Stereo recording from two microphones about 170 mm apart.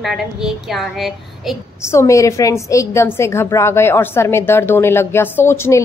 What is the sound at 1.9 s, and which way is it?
A woman's voice, 15° left (ahead or behind).